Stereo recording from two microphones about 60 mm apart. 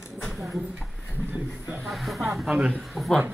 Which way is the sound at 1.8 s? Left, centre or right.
Centre.